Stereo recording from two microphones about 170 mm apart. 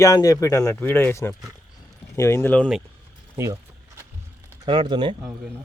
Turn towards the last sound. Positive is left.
turn(degrees=-25)  # may be behind; listen again after turning